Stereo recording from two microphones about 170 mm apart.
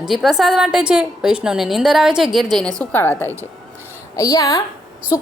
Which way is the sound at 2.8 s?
10° left (ahead or behind).